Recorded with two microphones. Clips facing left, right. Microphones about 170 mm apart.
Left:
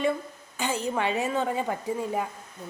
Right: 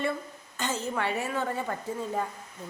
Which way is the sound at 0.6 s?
15° left (ahead or behind).